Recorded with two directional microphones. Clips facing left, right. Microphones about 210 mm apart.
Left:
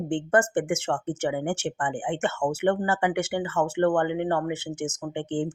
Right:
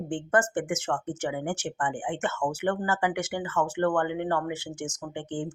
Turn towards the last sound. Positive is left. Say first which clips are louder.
# left 5 dB
turn(degrees=25)  # may be behind; listen again after turning